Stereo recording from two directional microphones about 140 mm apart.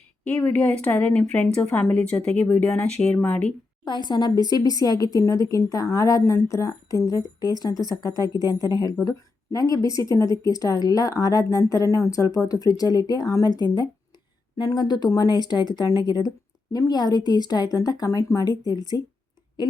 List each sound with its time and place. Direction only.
0.3 s a woman's voice: 10° left (ahead or behind)
3.8 s a woman's voice: 30° left (ahead or behind)